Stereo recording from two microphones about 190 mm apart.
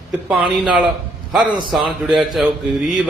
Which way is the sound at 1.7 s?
Centre (ahead or behind).